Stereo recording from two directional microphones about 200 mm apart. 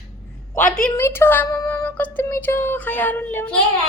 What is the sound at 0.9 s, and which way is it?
Speech, 10° left (ahead or behind).